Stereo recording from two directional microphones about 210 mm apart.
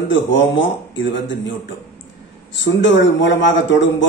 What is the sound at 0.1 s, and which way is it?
A man's voice, 60° left (ahead or behind).